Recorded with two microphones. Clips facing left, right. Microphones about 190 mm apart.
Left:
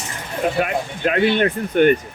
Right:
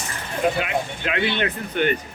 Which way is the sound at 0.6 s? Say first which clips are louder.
Left 4 dB; 45° left (ahead or behind).